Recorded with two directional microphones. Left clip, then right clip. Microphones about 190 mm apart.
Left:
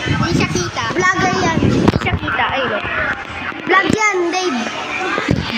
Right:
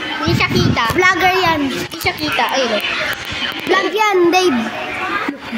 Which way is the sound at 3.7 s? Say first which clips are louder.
Left 1 dB; 25° right (ahead or behind).